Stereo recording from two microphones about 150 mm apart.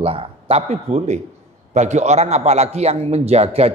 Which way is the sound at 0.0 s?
40° right (ahead or behind).